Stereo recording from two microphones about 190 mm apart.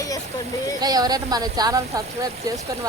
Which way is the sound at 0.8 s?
20° right (ahead or behind).